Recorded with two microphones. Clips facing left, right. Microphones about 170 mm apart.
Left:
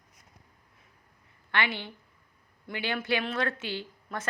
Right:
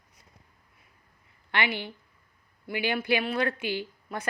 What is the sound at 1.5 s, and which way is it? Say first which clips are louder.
A woman's voice: right 1 dB; 15° right (ahead or behind).